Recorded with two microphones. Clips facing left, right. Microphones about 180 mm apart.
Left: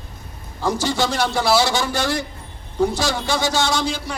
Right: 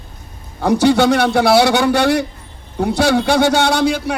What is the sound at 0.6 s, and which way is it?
A man's voice, 60° right (ahead or behind).